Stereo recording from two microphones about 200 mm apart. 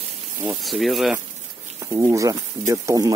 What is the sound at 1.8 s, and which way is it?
Speech, 15° right (ahead or behind).